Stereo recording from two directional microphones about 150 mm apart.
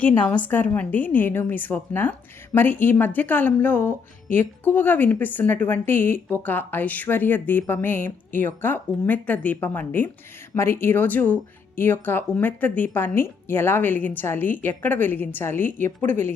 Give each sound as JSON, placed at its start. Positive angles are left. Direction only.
{"t": 0.0, "sound": "a woman's voice", "side_deg": 10}